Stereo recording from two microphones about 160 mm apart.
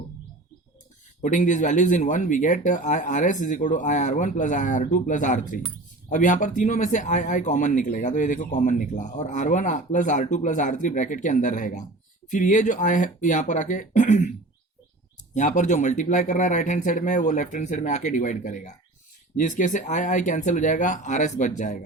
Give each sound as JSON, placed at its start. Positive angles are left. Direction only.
{"t": 1.2, "sound": "speech", "side_deg": 50}
{"t": 15.4, "sound": "speech", "side_deg": 50}